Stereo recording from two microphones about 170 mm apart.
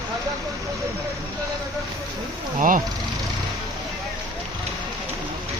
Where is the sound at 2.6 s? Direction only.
55° right (ahead or behind).